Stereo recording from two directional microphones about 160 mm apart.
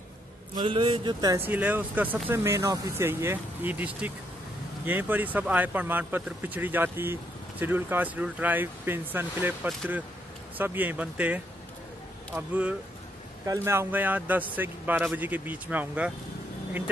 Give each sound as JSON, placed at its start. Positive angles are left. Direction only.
{"t": 0.6, "sound": "speech", "side_deg": -30}
{"t": 1.4, "sound": "speech", "side_deg": -10}